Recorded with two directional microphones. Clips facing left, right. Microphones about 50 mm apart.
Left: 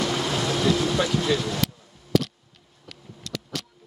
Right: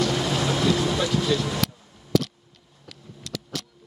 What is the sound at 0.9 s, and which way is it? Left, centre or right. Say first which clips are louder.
Vehicle: even; centre.